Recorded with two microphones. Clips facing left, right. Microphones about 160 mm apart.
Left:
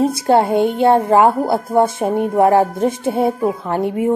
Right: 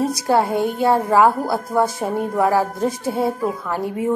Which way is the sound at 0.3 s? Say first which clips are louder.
Left 4 dB; 25° left (ahead or behind).